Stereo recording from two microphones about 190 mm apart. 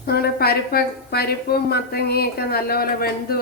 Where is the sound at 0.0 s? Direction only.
55° left (ahead or behind).